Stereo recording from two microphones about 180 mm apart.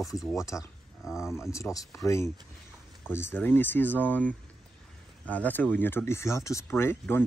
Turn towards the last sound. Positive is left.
turn(degrees=10)  # may be behind; listen again after turning